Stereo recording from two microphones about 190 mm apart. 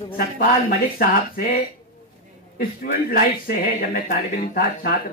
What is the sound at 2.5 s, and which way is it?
A man's voice, 50° left (ahead or behind).